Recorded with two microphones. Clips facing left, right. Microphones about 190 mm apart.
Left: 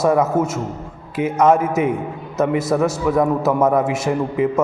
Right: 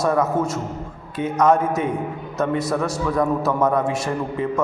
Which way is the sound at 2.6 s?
20° left (ahead or behind).